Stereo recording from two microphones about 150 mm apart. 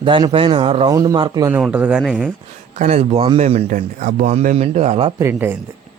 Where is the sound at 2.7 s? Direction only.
50° right (ahead or behind).